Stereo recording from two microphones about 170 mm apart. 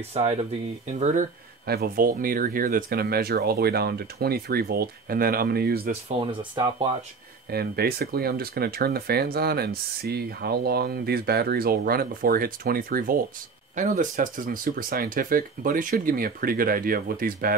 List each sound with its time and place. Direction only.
0.1 s speech: 35° right (ahead or behind)
1.7 s speech: 60° right (ahead or behind)
7.5 s speech: 65° right (ahead or behind)